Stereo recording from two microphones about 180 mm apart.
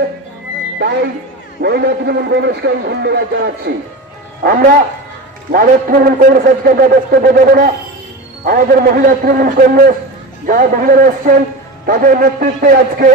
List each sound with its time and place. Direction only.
1.6 s a man's voice: 65° right (ahead or behind); by 13.1 s 50° right (ahead or behind)